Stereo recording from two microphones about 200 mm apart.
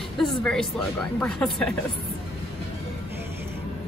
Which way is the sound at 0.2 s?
5° left (ahead or behind).